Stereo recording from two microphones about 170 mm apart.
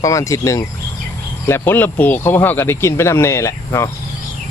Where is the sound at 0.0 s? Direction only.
20° left (ahead or behind).